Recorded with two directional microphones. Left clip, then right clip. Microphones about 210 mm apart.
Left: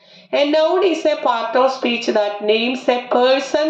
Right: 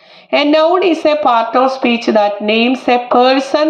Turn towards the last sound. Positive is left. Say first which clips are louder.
# right 5 dB
turn(degrees=-35)  # may be behind; listen again after turning